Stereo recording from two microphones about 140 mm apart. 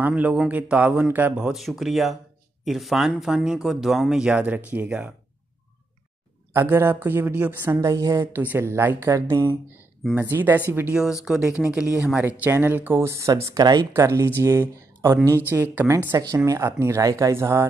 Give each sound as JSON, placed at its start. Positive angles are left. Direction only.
{"t": 0.0, "sound": "speech", "side_deg": -10}
{"t": 6.5, "sound": "speech", "side_deg": -15}
{"t": 10.1, "sound": "speech", "side_deg": -15}